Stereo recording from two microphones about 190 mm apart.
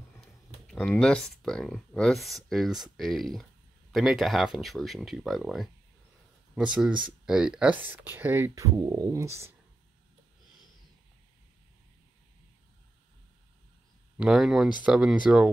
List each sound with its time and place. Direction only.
0.2 s speech: 5° left (ahead or behind); by 9.6 s 15° right (ahead or behind)
14.1 s speech: 5° right (ahead or behind)